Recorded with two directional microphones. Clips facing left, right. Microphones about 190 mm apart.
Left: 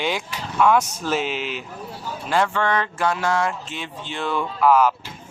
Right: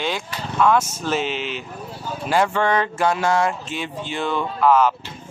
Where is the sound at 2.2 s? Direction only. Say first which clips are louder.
Right 2 dB; 10° right (ahead or behind).